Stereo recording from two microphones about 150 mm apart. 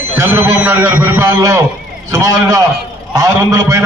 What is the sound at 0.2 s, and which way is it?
A man's voice, 15° right (ahead or behind).